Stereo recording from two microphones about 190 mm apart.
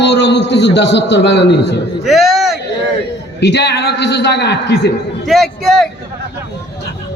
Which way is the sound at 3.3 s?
65° left (ahead or behind).